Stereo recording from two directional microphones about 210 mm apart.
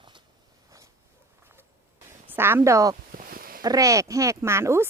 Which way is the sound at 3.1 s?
45° right (ahead or behind).